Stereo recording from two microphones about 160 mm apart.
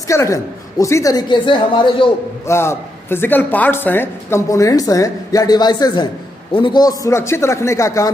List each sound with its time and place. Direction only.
0.1 s a woman's voice: 20° left (ahead or behind)
2.4 s a man's voice: 15° left (ahead or behind)